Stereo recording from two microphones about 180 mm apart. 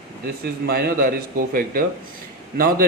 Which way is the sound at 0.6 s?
55° right (ahead or behind).